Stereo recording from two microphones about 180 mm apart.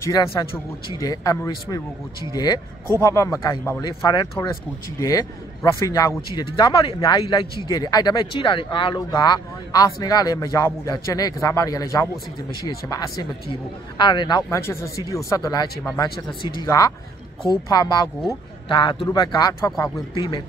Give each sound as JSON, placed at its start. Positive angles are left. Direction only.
{"t": 0.0, "sound": "speech", "side_deg": 20}